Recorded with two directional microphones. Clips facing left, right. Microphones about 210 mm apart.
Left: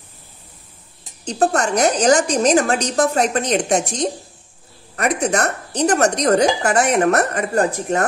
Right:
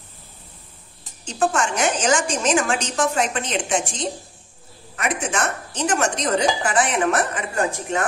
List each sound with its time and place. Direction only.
1.2 s speech: 40° left (ahead or behind)